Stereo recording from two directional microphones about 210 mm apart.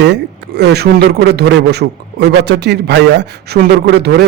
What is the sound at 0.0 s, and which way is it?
A man's voice, 55° right (ahead or behind).